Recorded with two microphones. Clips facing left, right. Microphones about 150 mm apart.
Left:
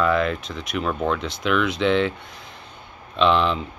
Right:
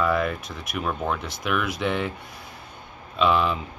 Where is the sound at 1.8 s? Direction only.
90° left.